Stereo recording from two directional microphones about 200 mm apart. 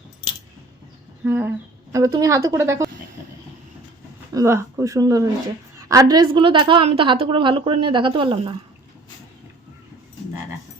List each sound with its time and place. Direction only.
1.2 s a woman's voice: 10° right (ahead or behind)
4.4 s a woman's voice: 15° right (ahead or behind)